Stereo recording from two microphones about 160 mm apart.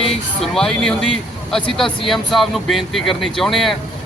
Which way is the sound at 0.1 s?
5° left (ahead or behind).